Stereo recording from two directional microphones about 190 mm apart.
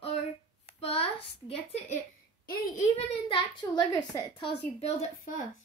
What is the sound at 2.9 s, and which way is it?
A child's voice, 25° left (ahead or behind).